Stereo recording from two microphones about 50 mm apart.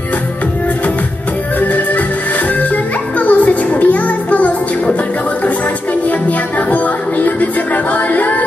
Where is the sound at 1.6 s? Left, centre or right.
Left.